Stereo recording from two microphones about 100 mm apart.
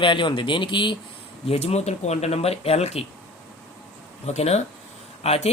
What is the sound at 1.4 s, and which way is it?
Speech, 90° left.